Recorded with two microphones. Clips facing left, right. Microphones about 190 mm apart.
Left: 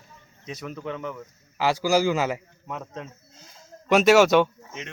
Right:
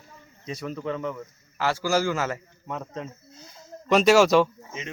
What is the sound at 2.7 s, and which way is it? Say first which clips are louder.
Speech: right 3 dB; 5° left (ahead or behind).